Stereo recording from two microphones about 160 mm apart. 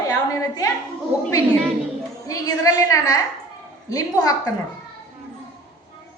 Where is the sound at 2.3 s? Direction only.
20° left (ahead or behind).